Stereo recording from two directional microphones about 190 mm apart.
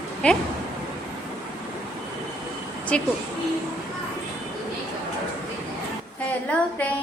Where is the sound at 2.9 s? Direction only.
5° left (ahead or behind).